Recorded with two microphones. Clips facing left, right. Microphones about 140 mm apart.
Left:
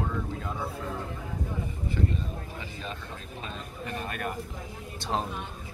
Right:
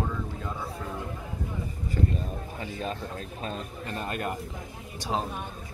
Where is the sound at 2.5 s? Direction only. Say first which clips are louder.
Right 5 dB; 40° right (ahead or behind).